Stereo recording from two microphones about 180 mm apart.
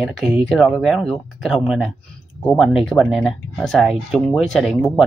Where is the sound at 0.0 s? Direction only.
Centre (ahead or behind).